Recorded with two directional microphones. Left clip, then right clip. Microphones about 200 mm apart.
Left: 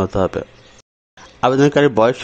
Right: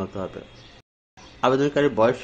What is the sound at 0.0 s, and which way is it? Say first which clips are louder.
Speech: left 13 dB; 45° left (ahead or behind).